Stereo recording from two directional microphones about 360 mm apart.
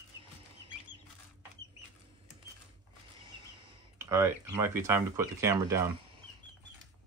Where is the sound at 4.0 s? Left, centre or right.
Centre.